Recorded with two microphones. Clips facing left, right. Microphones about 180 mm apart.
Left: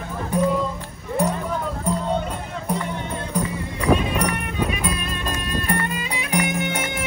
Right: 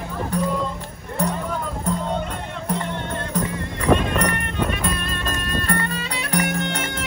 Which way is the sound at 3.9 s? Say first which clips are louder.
Right 1 dB; 5° left (ahead or behind).